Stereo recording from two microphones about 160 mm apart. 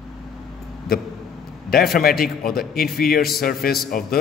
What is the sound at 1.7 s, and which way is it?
A man's voice, 70° left (ahead or behind).